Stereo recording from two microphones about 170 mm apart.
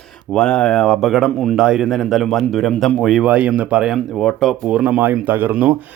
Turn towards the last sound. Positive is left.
turn(degrees=-10)  # may be behind; listen again after turning